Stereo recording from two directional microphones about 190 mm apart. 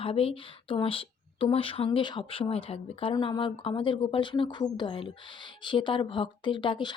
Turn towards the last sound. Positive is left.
turn(degrees=25)  # may be behind; listen again after turning